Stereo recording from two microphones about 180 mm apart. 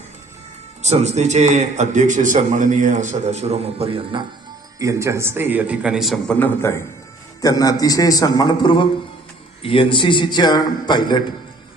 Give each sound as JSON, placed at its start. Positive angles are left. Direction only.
{"t": 0.8, "sound": "a man's voice", "side_deg": -40}
{"t": 4.8, "sound": "a man's voice", "side_deg": -15}
{"t": 6.4, "sound": "a man's voice", "side_deg": 15}